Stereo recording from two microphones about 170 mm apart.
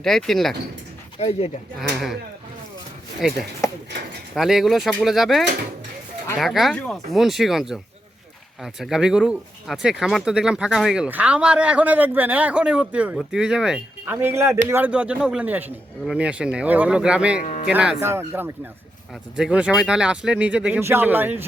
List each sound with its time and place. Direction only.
0.0 s speech: centre (ahead or behind)
1.2 s speech: 40° left (ahead or behind)
3.2 s speech: 5° right (ahead or behind)
3.6 s speech: 20° left (ahead or behind)
4.4 s a man's voice: centre (ahead or behind)
17.4 s speech: 45° left (ahead or behind)
17.7 s a man's voice: 10° right (ahead or behind)